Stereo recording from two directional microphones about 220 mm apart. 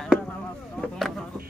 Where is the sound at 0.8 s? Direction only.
Centre (ahead or behind).